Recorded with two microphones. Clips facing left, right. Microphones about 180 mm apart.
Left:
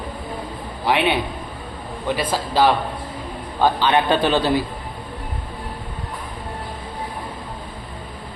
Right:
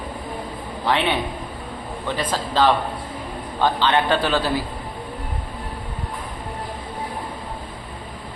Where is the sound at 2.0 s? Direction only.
10° left (ahead or behind).